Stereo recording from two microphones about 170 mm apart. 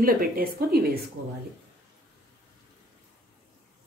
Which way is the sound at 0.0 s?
60° right (ahead or behind).